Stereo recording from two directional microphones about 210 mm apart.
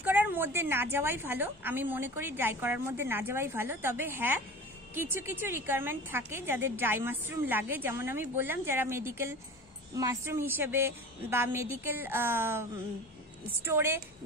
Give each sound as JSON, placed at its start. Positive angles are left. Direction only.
{"t": 0.0, "sound": "a woman's voice", "side_deg": -10}
{"t": 13.7, "sound": "a woman's voice", "side_deg": -10}